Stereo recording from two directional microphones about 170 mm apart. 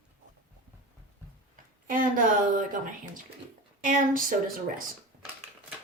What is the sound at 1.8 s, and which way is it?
A woman's voice, 55° right (ahead or behind).